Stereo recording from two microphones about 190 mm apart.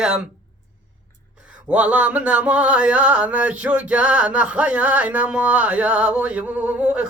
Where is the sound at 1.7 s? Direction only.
5° right (ahead or behind).